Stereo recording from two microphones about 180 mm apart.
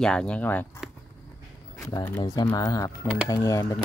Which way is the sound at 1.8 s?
20° left (ahead or behind).